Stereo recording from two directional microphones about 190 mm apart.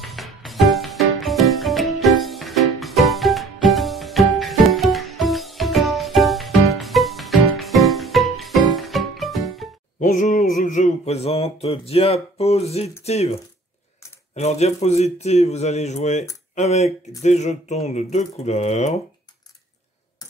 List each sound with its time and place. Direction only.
0.0 s music: centre (ahead or behind)
9.9 s a sound: 40° left (ahead or behind)
13.0 s speech: 35° left (ahead or behind)